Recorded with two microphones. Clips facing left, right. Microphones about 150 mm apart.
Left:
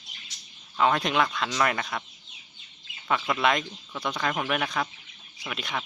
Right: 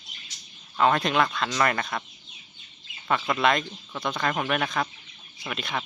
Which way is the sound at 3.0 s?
5° left (ahead or behind).